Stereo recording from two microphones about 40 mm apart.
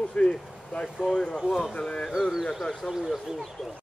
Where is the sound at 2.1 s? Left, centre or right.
Centre.